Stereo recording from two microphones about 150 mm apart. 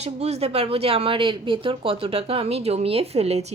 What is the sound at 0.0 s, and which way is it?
A woman's voice, 45° right (ahead or behind).